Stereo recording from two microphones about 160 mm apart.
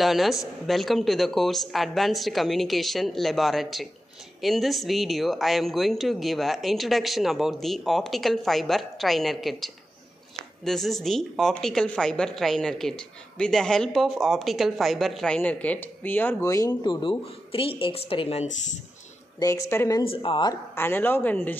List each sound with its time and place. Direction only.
0.0 s speech: centre (ahead or behind); by 18.5 s 35° left (ahead or behind)
19.4 s speech: 15° left (ahead or behind)
20.0 s speech: 35° left (ahead or behind)
20.7 s speech: 15° left (ahead or behind)